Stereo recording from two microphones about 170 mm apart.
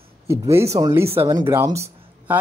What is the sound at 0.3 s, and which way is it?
Speech, 15° right (ahead or behind).